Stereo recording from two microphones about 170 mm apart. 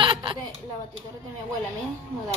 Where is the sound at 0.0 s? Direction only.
30° right (ahead or behind).